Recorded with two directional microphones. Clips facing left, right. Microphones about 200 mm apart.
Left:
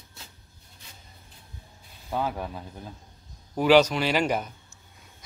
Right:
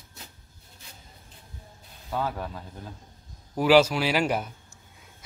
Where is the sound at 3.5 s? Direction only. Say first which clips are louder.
Even; 5° right (ahead or behind).